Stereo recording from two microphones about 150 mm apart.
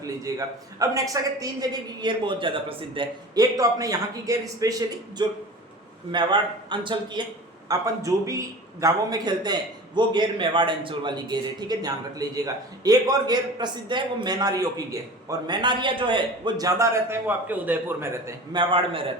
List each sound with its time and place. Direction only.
0.3 s a man's voice: 25° right (ahead or behind)
18.5 s a man's voice: 35° right (ahead or behind)